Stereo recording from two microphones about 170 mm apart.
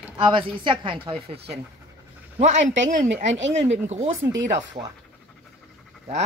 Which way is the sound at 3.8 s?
40° right (ahead or behind).